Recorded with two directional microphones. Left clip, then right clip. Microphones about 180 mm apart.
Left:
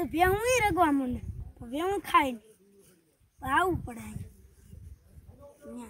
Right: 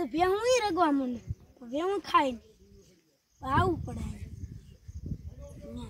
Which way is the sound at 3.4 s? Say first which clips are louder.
Left 1 dB; 15° left (ahead or behind).